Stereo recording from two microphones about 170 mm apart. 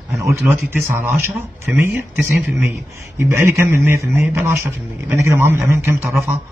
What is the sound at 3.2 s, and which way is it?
A man's voice, 15° right (ahead or behind).